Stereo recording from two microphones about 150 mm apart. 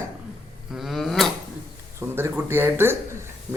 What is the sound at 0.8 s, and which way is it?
Drawer open or close, centre (ahead or behind).